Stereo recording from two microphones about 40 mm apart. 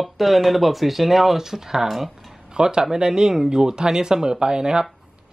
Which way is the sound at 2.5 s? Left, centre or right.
Centre.